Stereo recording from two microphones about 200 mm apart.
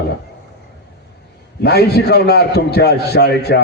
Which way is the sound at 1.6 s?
55° left (ahead or behind).